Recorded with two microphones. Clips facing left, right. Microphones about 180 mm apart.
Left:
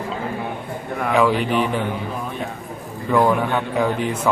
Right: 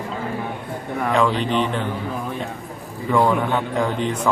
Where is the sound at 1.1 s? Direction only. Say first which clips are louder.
Left 2 dB; 5° left (ahead or behind).